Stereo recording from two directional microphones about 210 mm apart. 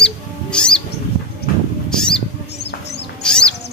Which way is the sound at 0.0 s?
5° left (ahead or behind).